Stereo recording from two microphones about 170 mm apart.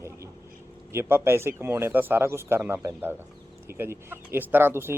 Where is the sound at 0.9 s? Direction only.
15° right (ahead or behind).